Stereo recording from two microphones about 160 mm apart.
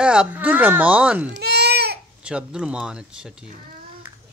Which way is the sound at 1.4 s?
90° right.